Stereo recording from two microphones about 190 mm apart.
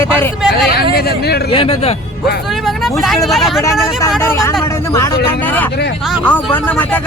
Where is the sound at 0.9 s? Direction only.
55° left (ahead or behind).